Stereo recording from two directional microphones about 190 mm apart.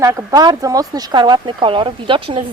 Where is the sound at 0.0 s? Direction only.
15° right (ahead or behind).